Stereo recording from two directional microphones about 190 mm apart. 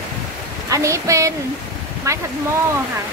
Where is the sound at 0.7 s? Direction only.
15° right (ahead or behind).